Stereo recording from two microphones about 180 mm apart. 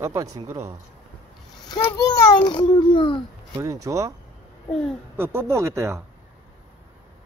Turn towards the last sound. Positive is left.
turn(degrees=-15)  # may be behind; listen again after turning